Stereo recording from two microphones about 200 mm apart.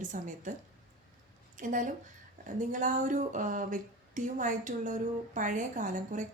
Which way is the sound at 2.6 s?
40° right (ahead or behind).